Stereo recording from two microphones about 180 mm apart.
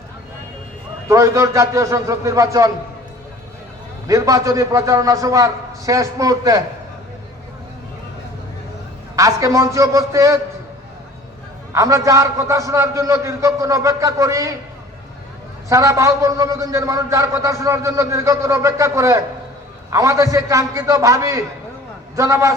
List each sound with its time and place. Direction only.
1.0 s a man's voice: 15° right (ahead or behind)
4.0 s a man's voice: 20° right (ahead or behind)
9.1 s a man's voice: 15° right (ahead or behind)
11.7 s a man's voice: 15° right (ahead or behind)
15.7 s a man's voice: 15° right (ahead or behind)